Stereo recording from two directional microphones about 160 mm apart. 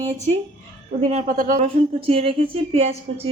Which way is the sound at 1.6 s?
40° right (ahead or behind).